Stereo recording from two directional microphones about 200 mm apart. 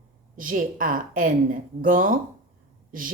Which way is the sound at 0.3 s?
40° right (ahead or behind).